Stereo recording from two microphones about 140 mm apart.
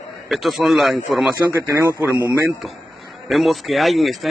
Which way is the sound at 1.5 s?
20° right (ahead or behind).